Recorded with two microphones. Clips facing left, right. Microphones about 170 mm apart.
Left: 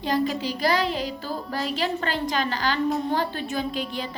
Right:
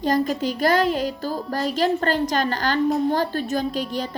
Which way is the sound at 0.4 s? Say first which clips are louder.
Right 4 dB; 50° right (ahead or behind).